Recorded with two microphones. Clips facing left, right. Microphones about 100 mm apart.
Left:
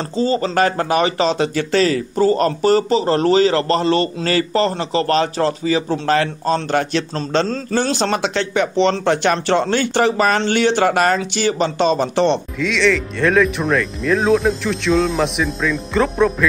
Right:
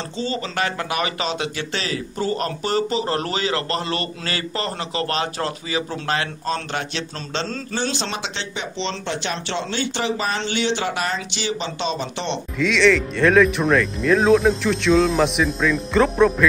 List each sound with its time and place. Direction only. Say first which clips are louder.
0.1 s speech: left 10 dB; 40° left (ahead or behind)
12.5 s speech: even; centre (ahead or behind)